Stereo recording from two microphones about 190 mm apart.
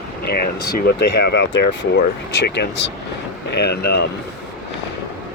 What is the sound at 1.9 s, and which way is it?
Speech, 65° left (ahead or behind).